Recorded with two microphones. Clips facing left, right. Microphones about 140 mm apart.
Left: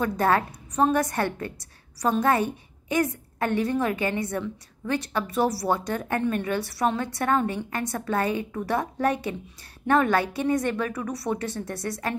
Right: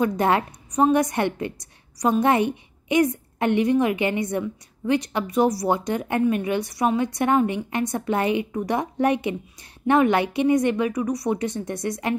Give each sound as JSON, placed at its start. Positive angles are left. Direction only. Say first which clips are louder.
{"t": 0.0, "sound": "a woman's voice", "louder": "right 2 dB", "side_deg": -15}